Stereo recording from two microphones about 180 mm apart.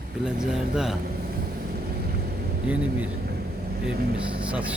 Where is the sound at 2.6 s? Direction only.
10° right (ahead or behind).